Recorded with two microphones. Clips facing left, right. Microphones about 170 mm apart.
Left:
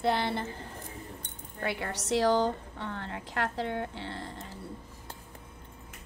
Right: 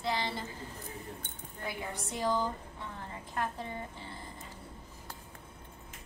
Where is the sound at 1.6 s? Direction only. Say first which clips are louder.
Left 5 dB; 75° left (ahead or behind).